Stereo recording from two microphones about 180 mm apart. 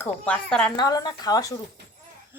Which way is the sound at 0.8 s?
20° left (ahead or behind).